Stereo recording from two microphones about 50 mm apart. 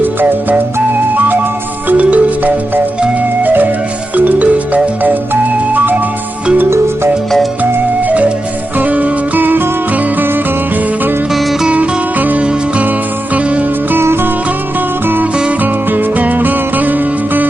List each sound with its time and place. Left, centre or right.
0.0 s music: right
7.6 s music: right
11.7 s music: right
14.0 s music: right
15.0 s music: right